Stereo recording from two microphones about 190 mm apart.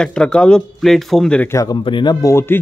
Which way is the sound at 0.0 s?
5° left (ahead or behind).